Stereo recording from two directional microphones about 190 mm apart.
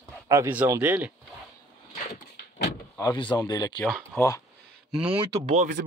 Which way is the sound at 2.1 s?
55° left (ahead or behind).